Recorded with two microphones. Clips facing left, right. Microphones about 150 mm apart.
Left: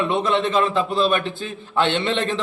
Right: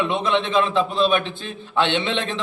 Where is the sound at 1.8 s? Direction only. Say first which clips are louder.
Left 1 dB; 40° left (ahead or behind).